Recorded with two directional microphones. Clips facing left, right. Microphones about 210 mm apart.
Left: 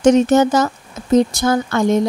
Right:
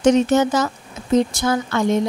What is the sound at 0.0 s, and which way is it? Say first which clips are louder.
Speech: left 3 dB; 45° left (ahead or behind).